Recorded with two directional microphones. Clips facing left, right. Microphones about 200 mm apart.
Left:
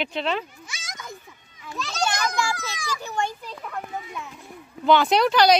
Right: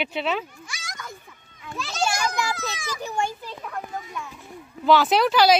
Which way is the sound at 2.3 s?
20° right (ahead or behind).